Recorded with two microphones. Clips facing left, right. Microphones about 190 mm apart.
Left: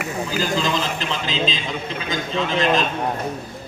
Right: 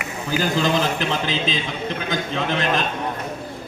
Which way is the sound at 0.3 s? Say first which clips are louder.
Right 4 dB; 55° right (ahead or behind).